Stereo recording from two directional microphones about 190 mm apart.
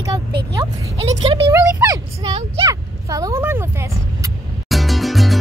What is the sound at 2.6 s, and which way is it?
Speech, 15° right (ahead or behind).